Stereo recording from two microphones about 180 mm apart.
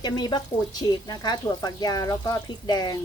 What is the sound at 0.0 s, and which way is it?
Speech, 25° left (ahead or behind).